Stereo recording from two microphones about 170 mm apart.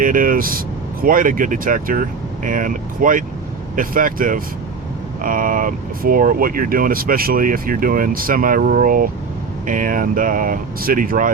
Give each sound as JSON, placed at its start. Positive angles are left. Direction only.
{"t": 0.0, "sound": "speech", "side_deg": -55}